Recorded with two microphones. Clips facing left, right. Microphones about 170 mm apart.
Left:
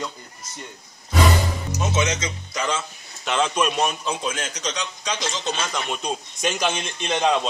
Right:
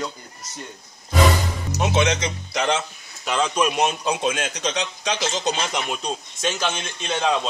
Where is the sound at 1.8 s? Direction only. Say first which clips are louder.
Right 4 dB; 65° right (ahead or behind).